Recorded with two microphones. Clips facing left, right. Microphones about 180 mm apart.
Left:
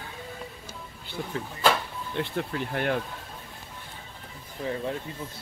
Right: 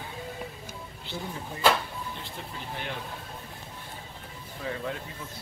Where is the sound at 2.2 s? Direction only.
65° left (ahead or behind).